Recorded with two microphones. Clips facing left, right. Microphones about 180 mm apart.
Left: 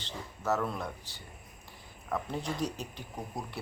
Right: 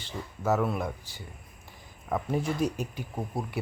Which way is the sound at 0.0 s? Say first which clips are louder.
Right 5 dB; 10° right (ahead or behind).